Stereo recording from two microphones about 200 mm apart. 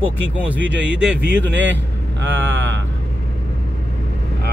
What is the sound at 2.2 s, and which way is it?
Speech, 70° right (ahead or behind).